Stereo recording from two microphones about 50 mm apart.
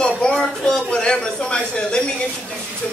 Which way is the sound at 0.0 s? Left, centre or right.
Centre.